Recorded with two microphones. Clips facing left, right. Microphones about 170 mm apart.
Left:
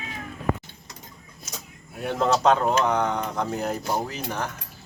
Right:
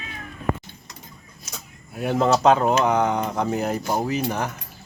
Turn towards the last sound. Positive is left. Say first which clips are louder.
# right 5 dB
turn(degrees=-10)  # may be behind; listen again after turning